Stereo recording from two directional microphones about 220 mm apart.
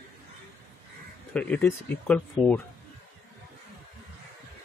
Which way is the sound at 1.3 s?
5° left (ahead or behind).